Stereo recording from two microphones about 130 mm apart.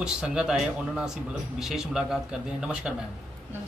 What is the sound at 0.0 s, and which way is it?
Speech, 5° right (ahead or behind).